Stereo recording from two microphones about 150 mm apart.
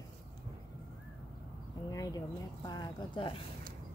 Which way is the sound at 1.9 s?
20° left (ahead or behind).